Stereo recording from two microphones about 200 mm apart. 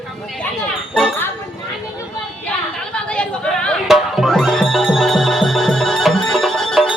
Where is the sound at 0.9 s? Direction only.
Centre (ahead or behind).